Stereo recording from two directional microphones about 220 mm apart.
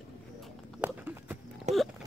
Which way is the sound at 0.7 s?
10° right (ahead or behind).